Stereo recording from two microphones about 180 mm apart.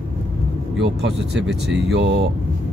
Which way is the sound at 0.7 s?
80° right.